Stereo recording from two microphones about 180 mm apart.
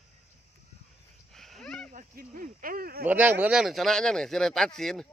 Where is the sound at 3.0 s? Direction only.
10° right (ahead or behind).